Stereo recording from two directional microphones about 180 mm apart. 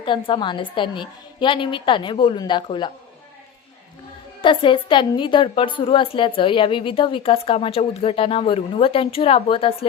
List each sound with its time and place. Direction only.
0.0 s a woman's voice: 25° left (ahead or behind)
4.4 s a woman's voice: 25° left (ahead or behind)